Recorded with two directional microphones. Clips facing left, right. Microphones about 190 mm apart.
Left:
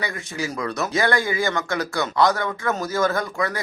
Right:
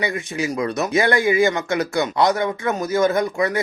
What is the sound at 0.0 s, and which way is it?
Speech, 20° right (ahead or behind).